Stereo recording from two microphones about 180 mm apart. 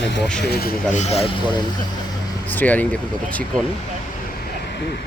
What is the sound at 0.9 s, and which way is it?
Speech, 35° left (ahead or behind).